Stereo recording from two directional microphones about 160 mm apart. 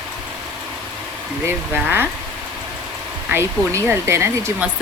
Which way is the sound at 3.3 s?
15° right (ahead or behind).